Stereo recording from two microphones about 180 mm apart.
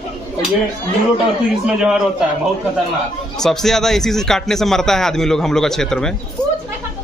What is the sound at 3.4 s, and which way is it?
Speech, centre (ahead or behind).